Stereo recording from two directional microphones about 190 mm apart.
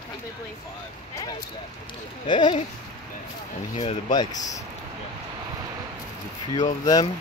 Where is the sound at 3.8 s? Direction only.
35° left (ahead or behind).